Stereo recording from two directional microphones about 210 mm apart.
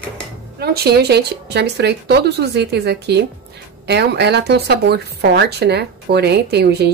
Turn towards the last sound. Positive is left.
turn(degrees=-50)  # may be behind; listen again after turning